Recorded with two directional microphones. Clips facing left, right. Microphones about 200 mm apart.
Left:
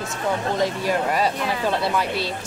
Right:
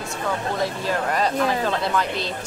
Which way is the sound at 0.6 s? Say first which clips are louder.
Left 2 dB; 10° left (ahead or behind).